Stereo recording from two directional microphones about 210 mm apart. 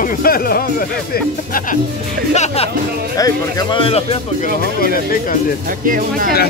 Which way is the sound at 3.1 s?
20° left (ahead or behind).